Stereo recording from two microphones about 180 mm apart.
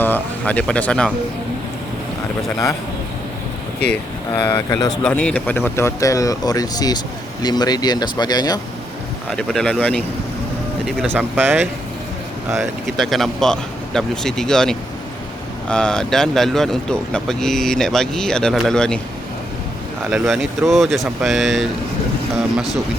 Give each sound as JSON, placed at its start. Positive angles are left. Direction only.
{"t": 0.0, "sound": "speech", "side_deg": 10}
{"t": 4.4, "sound": "speech", "side_deg": 15}
{"t": 5.0, "sound": "speech", "side_deg": 5}
{"t": 9.3, "sound": "speech", "side_deg": 5}
{"t": 11.0, "sound": "speech", "side_deg": -10}
{"t": 12.8, "sound": "speech", "side_deg": 0}
{"t": 20.1, "sound": "speech", "side_deg": 0}